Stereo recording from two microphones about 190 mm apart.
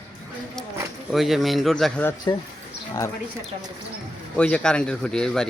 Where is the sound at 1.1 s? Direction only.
Centre (ahead or behind).